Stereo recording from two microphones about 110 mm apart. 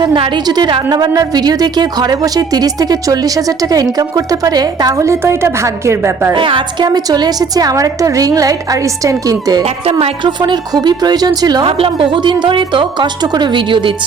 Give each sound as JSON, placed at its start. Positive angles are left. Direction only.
{"t": 0.4, "sound": "a woman's voice", "side_deg": -40}
{"t": 6.3, "sound": "a woman's voice", "side_deg": -50}
{"t": 11.6, "sound": "a woman's voice", "side_deg": -55}